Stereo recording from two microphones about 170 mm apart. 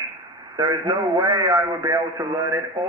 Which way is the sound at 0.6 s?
25° right (ahead or behind).